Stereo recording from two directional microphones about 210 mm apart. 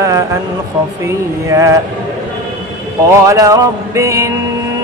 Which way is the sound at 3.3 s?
15° right (ahead or behind).